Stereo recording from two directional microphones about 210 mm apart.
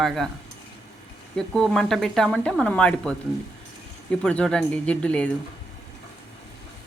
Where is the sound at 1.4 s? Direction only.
Centre (ahead or behind).